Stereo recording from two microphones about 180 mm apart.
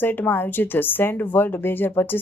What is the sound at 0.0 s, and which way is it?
Speech, 10° left (ahead or behind).